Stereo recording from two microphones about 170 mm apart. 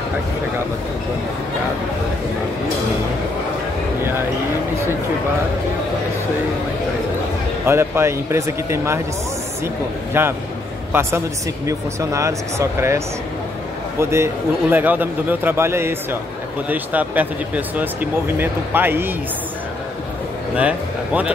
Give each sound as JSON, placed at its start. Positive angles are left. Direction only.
{"t": 7.6, "sound": "a man's voice", "side_deg": -15}
{"t": 10.1, "sound": "a man's voice", "side_deg": -15}
{"t": 20.5, "sound": "a man's voice", "side_deg": -10}